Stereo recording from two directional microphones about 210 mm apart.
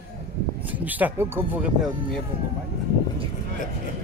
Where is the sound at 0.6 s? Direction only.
10° right (ahead or behind).